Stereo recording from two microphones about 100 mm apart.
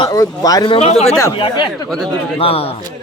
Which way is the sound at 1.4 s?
55° left (ahead or behind).